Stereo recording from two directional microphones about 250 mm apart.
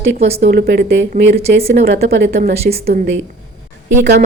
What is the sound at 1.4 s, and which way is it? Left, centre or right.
Speech, right.